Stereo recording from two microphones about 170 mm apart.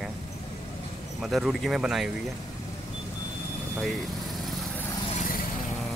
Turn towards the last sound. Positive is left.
turn(degrees=50)  # may be behind; listen again after turning